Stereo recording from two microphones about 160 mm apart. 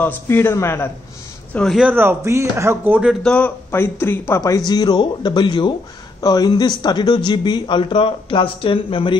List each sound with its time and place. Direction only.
0.0 s speech: 15° left (ahead or behind)
1.5 s speech: 5° left (ahead or behind)
1.8 s speech: 10° right (ahead or behind)
3.2 s speech: 5° left (ahead or behind); by 9.1 s 35° left (ahead or behind)